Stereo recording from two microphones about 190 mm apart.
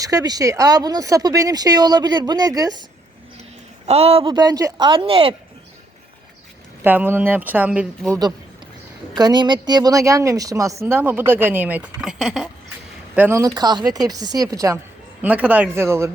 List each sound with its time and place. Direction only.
0.0 s speech: 20° right (ahead or behind)
3.8 s speech: 35° right (ahead or behind)
6.8 s speech: 10° right (ahead or behind)
9.1 s speech: 20° right (ahead or behind); by 12.5 s centre (ahead or behind)
13.1 s speech: 15° right (ahead or behind)